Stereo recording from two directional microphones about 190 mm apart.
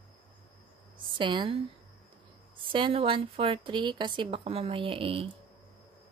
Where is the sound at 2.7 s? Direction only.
25° right (ahead or behind).